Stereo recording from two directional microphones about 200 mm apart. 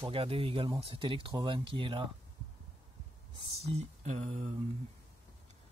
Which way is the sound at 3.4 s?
35° right (ahead or behind).